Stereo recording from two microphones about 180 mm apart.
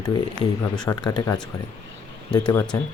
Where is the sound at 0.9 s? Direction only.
20° left (ahead or behind).